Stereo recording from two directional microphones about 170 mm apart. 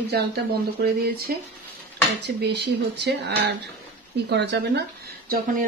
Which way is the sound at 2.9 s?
80° right.